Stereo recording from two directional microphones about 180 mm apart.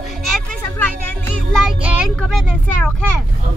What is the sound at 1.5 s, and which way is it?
Child singing, 5° right (ahead or behind).